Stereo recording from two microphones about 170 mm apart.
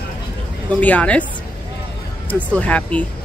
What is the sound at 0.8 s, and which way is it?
Speech, 10° left (ahead or behind).